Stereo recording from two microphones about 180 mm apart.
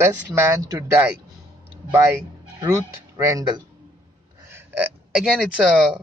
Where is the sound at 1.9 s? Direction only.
15° right (ahead or behind).